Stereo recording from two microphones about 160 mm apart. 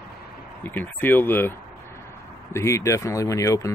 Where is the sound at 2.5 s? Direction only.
20° left (ahead or behind).